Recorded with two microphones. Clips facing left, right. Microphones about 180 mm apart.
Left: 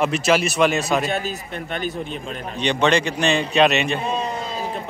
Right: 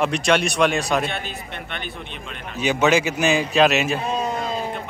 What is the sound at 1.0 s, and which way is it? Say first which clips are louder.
Speech: left 4 dB; 40° left (ahead or behind).